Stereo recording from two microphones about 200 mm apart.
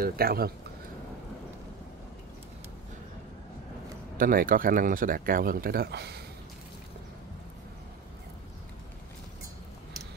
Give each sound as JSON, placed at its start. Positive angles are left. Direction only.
{"t": 0.0, "sound": "speech", "side_deg": -50}
{"t": 4.2, "sound": "speech", "side_deg": -45}